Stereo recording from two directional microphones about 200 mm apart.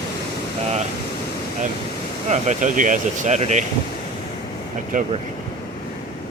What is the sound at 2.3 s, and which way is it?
Speech, 40° right (ahead or behind).